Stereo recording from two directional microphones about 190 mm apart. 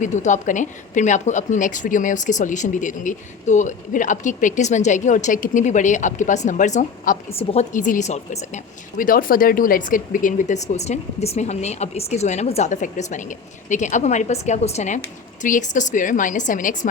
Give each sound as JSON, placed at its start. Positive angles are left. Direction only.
{"t": 0.0, "sound": "a woman's voice", "side_deg": 40}